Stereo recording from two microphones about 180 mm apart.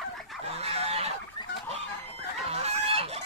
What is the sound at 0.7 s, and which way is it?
Chicken, 35° right (ahead or behind).